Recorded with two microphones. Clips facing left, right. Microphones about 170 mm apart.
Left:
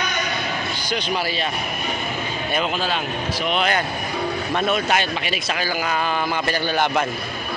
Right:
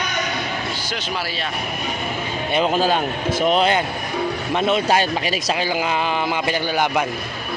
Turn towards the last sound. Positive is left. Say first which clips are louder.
# right 1 dB
turn(degrees=-10)  # may be behind; listen again after turning